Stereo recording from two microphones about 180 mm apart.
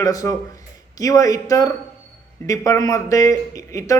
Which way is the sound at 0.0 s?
20° left (ahead or behind).